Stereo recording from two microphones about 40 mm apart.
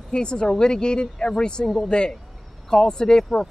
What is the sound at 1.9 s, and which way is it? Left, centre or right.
Speech, left.